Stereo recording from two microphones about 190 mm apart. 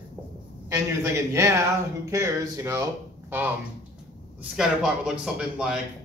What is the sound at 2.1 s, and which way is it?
Speech, 15° right (ahead or behind).